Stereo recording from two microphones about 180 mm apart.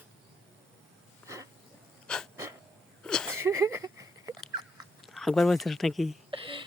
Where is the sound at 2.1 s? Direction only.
5° left (ahead or behind).